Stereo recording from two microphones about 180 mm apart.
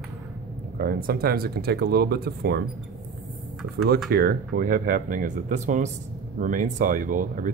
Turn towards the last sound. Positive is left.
turn(degrees=-45)  # may be behind; listen again after turning